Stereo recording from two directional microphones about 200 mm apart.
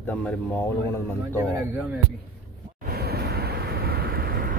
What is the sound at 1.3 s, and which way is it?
Speech, 10° right (ahead or behind).